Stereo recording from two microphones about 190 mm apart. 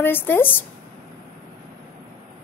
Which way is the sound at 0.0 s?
10° left (ahead or behind).